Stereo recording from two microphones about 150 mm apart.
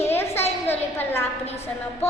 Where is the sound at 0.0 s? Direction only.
15° left (ahead or behind).